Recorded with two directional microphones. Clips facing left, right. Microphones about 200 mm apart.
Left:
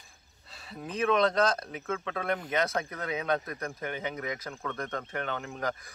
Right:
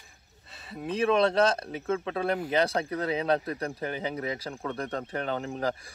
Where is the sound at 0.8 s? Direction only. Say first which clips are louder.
Right 2 dB; 30° right (ahead or behind).